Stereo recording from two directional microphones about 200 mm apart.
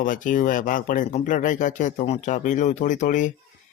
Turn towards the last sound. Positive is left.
turn(degrees=40)  # may be behind; listen again after turning